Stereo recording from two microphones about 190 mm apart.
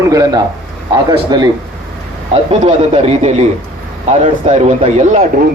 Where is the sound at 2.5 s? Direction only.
30° right (ahead or behind).